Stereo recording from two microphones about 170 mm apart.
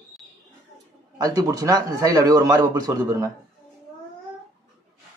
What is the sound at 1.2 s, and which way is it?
A man's voice, 20° right (ahead or behind).